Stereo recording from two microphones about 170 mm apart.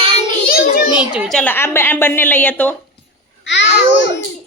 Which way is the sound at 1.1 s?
Centre (ahead or behind).